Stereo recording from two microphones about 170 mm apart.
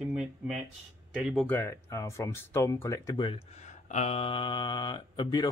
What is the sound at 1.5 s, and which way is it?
Speech, 10° left (ahead or behind).